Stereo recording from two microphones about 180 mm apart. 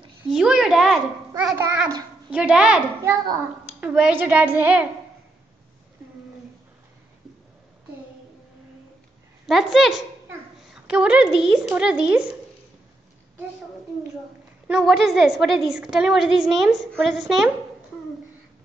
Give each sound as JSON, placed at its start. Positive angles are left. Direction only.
{"t": 0.3, "sound": "a woman's voice", "side_deg": -5}
{"t": 1.6, "sound": "a child's voice", "side_deg": -15}
{"t": 2.3, "sound": "a woman's voice", "side_deg": -5}
{"t": 3.0, "sound": "a child's voice", "side_deg": -15}
{"t": 9.5, "sound": "a woman's voice", "side_deg": 0}
{"t": 10.6, "sound": "a sound", "side_deg": -5}
{"t": 11.7, "sound": "a woman's voice", "side_deg": -5}
{"t": 14.7, "sound": "a woman's voice", "side_deg": 0}